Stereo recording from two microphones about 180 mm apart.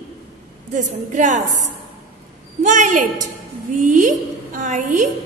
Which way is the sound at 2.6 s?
45° right (ahead or behind).